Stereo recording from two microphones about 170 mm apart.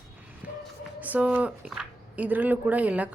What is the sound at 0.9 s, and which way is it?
Speech, 10° right (ahead or behind).